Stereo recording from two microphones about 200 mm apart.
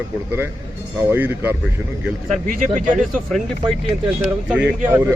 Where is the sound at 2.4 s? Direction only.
40° right (ahead or behind).